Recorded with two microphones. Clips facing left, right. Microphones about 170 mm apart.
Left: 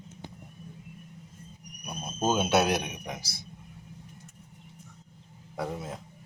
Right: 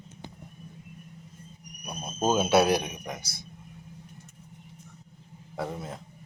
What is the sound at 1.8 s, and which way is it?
Speech, centre (ahead or behind).